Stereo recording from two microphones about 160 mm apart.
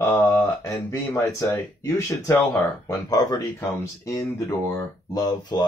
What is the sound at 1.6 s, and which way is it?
Speech, 15° left (ahead or behind).